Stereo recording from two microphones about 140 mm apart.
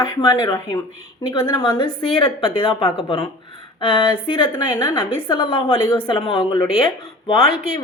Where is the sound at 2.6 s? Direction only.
40° left (ahead or behind).